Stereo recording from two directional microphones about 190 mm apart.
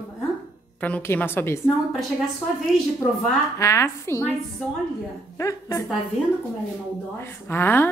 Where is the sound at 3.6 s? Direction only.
15° left (ahead or behind).